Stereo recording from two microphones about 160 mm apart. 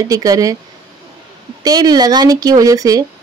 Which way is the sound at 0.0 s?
20° right (ahead or behind).